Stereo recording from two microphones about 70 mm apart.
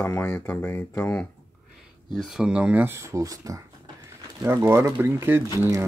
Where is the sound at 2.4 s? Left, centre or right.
Centre.